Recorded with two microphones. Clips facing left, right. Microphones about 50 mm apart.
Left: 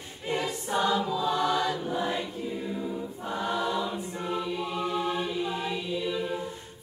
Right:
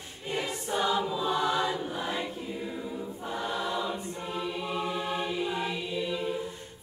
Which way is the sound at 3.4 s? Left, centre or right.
Centre.